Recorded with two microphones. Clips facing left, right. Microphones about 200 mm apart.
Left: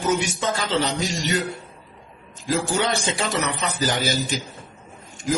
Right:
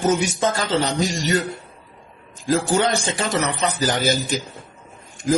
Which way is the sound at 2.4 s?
45° right (ahead or behind).